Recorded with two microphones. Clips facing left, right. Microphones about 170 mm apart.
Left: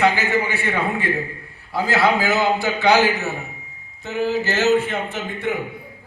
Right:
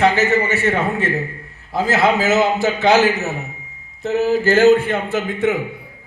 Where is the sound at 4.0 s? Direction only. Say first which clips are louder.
Right 5 dB; 40° right (ahead or behind); by 5.2 s 55° right (ahead or behind).